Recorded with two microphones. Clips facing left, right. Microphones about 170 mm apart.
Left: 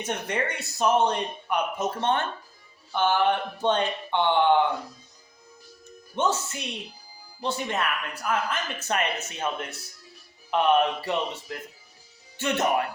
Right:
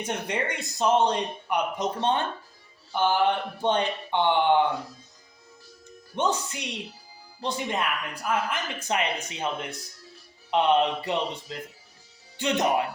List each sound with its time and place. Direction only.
0.0 s speech: 15° right (ahead or behind)
6.1 s speech: 15° right (ahead or behind)